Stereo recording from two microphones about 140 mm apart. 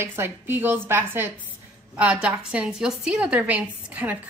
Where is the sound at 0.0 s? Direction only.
15° right (ahead or behind).